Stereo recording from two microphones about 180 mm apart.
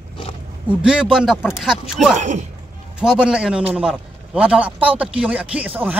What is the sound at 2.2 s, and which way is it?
Speech, 40° right (ahead or behind).